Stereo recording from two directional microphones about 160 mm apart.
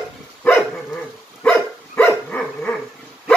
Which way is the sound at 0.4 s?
5° left (ahead or behind).